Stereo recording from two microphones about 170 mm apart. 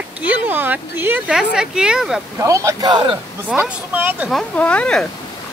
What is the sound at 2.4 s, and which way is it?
Speech, 20° right (ahead or behind).